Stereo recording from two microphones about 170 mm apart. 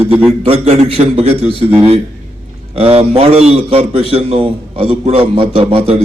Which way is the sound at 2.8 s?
35° right (ahead or behind).